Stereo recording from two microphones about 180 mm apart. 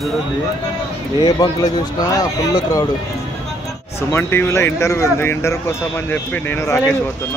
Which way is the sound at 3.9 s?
15° left (ahead or behind).